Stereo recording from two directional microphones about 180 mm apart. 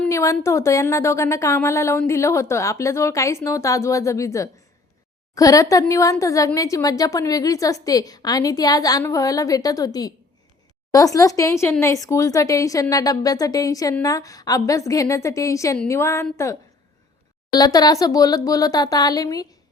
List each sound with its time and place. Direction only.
0.0 s a woman's voice: 15° left (ahead or behind)
17.5 s a woman's voice: 20° left (ahead or behind)